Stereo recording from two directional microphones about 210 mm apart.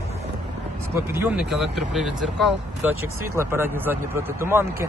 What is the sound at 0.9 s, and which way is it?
Speech, 10° right (ahead or behind).